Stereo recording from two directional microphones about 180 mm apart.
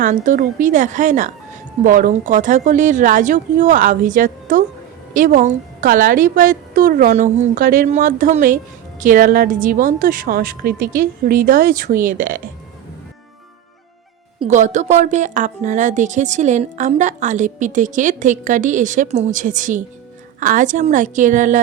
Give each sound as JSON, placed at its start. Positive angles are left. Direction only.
{"t": 0.0, "sound": "a woman's voice", "side_deg": -45}
{"t": 14.4, "sound": "a woman's voice", "side_deg": -40}